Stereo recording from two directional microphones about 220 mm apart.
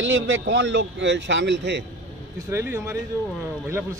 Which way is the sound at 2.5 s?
10° right (ahead or behind).